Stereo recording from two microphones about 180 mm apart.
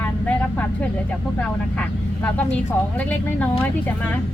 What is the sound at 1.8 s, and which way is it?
Speech, 5° left (ahead or behind).